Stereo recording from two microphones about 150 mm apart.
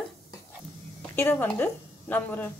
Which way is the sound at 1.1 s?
15° left (ahead or behind).